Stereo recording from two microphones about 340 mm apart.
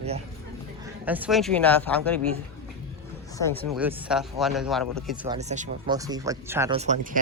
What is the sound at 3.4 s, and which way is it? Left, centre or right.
Speech, centre.